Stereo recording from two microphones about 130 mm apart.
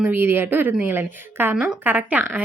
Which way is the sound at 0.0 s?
15° right (ahead or behind).